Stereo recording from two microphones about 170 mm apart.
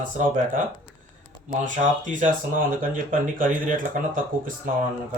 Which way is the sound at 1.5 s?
45° right (ahead or behind).